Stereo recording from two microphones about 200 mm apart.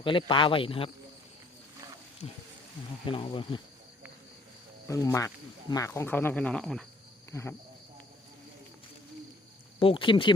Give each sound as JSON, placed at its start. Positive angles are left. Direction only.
{"t": 0.0, "sound": "speech", "side_deg": 25}
{"t": 3.1, "sound": "speech", "side_deg": 25}
{"t": 4.9, "sound": "speech", "side_deg": 15}
{"t": 9.8, "sound": "speech", "side_deg": 25}